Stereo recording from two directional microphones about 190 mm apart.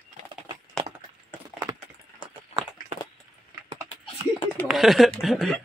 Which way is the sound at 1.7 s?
20° right (ahead or behind).